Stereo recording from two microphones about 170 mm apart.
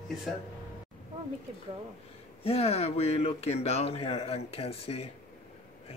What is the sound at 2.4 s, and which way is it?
Speech, 35° left (ahead or behind).